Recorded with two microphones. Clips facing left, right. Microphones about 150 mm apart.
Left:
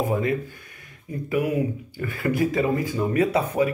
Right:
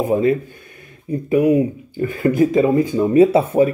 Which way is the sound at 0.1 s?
25° right (ahead or behind).